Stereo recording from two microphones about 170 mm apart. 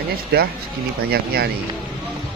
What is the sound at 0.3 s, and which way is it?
Speech, 65° right (ahead or behind).